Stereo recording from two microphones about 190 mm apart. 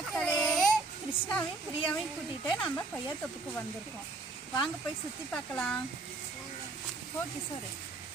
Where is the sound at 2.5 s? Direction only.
5° left (ahead or behind).